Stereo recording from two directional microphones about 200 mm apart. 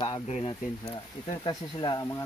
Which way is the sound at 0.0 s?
25° left (ahead or behind).